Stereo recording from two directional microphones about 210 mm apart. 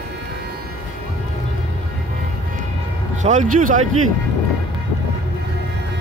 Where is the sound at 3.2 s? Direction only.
35° right (ahead or behind).